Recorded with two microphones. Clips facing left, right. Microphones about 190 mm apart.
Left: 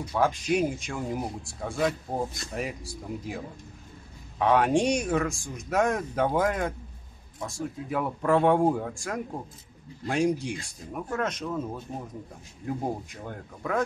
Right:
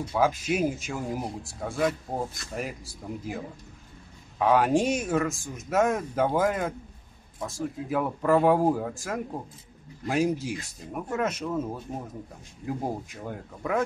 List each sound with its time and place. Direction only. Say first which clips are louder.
0.1 s speech: even; 5° right (ahead or behind)